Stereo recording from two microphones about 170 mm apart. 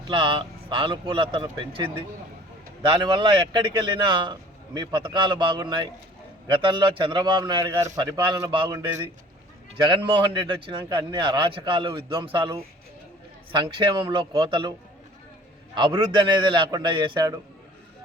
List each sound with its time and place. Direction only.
0.1 s a man's voice: 30° right (ahead or behind)
3.0 s a man's voice: 30° right (ahead or behind)
9.9 s a man's voice: 30° right (ahead or behind)
15.7 s a man's voice: 25° right (ahead or behind)